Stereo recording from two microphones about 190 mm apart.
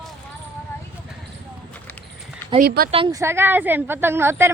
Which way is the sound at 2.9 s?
30° right (ahead or behind).